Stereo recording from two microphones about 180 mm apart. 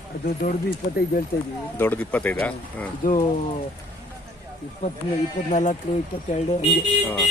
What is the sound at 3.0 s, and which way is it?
Speech, 50° left (ahead or behind).